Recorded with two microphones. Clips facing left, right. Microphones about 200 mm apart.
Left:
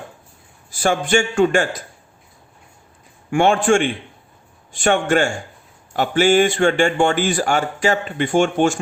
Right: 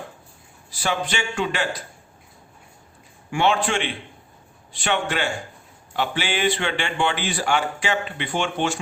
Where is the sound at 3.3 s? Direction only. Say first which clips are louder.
Left 6 dB; 50° left (ahead or behind).